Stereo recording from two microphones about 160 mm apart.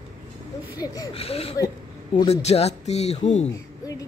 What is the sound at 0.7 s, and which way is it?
Speech, 25° left (ahead or behind).